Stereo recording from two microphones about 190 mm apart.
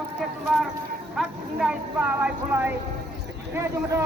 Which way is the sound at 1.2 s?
5° right (ahead or behind).